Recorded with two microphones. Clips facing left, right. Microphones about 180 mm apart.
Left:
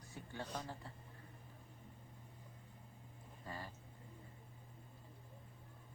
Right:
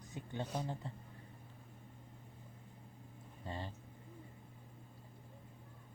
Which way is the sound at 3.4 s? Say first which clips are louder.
Right 4 dB; 25° right (ahead or behind).